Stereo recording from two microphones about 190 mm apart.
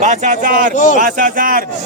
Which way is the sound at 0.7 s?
40° left (ahead or behind).